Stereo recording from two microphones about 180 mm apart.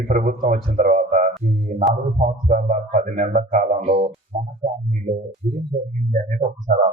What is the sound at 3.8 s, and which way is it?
Speech, 35° right (ahead or behind).